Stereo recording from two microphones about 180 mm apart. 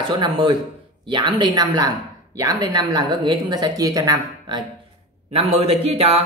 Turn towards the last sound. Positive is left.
turn(degrees=-35)  # may be behind; listen again after turning